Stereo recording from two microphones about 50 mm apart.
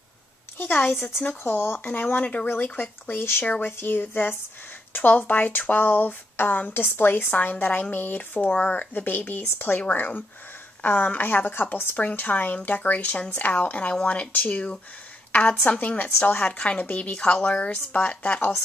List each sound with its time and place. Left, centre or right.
0.6 s a woman's voice: left